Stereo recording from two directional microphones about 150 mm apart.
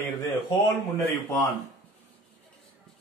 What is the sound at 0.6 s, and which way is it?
Speech, 15° left (ahead or behind).